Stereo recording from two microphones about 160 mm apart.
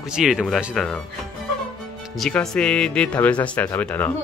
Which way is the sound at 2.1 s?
Centre (ahead or behind).